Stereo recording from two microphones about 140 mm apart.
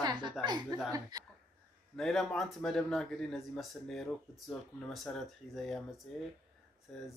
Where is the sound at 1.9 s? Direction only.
5° left (ahead or behind).